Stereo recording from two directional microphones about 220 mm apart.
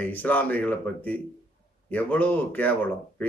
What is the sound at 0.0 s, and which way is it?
Speech, 5° left (ahead or behind).